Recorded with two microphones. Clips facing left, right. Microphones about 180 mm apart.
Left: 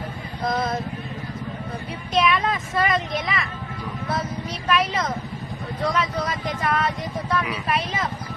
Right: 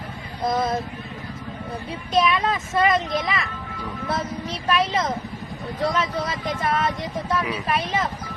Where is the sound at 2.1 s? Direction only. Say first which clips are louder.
Right 1 dB; 25° right (ahead or behind).